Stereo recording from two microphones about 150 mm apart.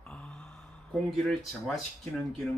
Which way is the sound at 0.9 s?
Centre (ahead or behind).